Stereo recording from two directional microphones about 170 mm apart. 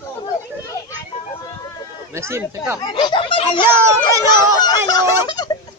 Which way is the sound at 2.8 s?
25° left (ahead or behind).